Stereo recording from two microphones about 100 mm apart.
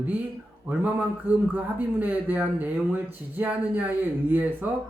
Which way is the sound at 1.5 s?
15° right (ahead or behind).